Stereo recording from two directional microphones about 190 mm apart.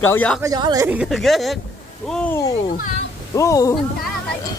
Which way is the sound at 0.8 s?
5° right (ahead or behind).